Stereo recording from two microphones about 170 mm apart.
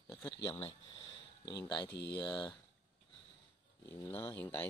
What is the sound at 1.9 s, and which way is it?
Speech, 75° left (ahead or behind).